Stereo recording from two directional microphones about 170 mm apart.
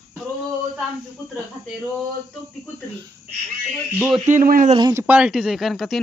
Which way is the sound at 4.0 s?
Centre (ahead or behind).